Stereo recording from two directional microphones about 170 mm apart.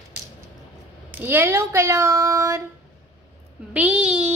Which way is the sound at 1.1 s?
10° right (ahead or behind).